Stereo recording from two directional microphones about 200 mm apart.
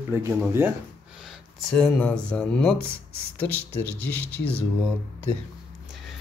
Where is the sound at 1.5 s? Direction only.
5° left (ahead or behind).